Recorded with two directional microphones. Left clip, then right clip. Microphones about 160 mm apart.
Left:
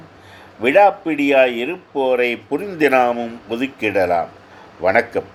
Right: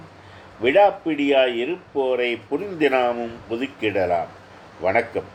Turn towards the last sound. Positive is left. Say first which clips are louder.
# left 5 dB
turn(degrees=40)  # may be behind; listen again after turning